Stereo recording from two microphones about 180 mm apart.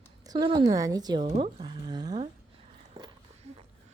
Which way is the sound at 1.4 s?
25° right (ahead or behind).